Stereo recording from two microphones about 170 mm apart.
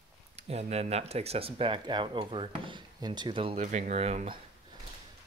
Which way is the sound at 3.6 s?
45° right (ahead or behind).